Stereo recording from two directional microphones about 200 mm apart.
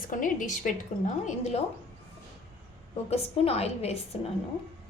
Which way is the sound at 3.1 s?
30° left (ahead or behind).